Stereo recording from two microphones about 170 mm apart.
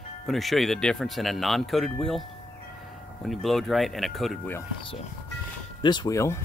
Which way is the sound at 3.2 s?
Centre (ahead or behind).